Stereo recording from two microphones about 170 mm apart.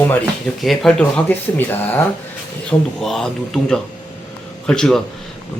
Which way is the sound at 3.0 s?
Centre (ahead or behind).